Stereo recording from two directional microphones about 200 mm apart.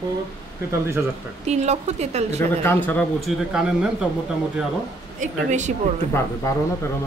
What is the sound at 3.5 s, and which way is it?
Speech, 5° right (ahead or behind).